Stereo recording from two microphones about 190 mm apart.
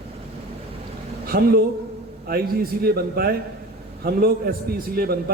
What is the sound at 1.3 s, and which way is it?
A man's voice, 50° right (ahead or behind).